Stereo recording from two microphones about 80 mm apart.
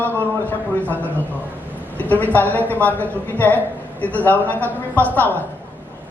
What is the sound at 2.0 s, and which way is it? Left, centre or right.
A woman's voice, left.